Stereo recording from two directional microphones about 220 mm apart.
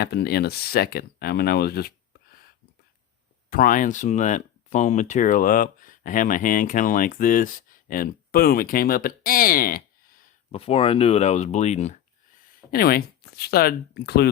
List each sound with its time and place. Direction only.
0.0 s speech: 45° left (ahead or behind)
3.5 s speech: 40° left (ahead or behind)
10.5 s speech: 25° left (ahead or behind)
12.7 s speech: 45° left (ahead or behind)